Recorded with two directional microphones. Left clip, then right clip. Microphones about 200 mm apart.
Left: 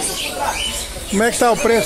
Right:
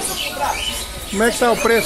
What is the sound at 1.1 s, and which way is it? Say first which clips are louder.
Speech: left 1 dB; 35° left (ahead or behind).